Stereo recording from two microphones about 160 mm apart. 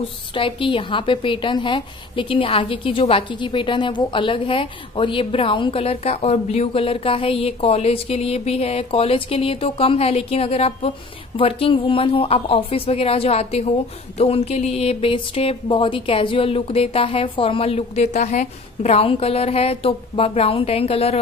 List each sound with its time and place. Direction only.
0.3 s a woman's voice: 30° left (ahead or behind)